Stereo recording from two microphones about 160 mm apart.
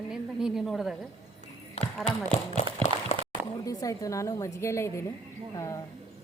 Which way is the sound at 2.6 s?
45° left (ahead or behind).